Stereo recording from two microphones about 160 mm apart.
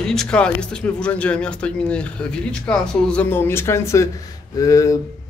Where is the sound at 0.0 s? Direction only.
5° left (ahead or behind).